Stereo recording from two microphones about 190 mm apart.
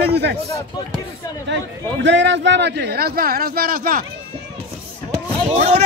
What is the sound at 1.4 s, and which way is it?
A man's voice, 70° right (ahead or behind).